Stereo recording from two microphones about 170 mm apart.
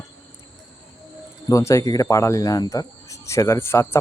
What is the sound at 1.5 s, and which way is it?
Speech, 20° left (ahead or behind).